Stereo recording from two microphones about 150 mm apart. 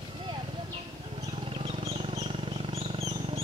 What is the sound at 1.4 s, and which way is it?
Wild animals, 40° right (ahead or behind).